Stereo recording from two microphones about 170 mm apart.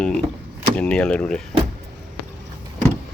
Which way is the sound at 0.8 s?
5° left (ahead or behind).